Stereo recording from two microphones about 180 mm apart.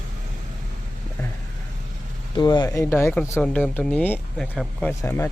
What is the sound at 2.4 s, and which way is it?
Speech, 25° left (ahead or behind).